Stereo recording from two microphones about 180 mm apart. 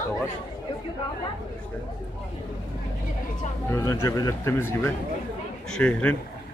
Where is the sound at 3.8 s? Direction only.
15° left (ahead or behind).